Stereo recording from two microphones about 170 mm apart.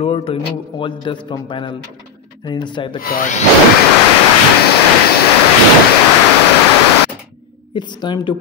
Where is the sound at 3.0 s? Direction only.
60° left (ahead or behind).